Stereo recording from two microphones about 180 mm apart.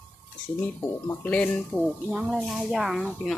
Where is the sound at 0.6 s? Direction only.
10° left (ahead or behind).